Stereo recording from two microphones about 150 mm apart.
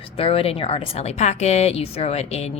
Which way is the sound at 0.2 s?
40° left (ahead or behind).